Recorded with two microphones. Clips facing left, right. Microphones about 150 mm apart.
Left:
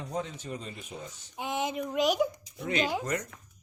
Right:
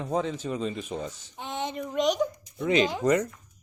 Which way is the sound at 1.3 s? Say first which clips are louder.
Left 3 dB; 10° left (ahead or behind).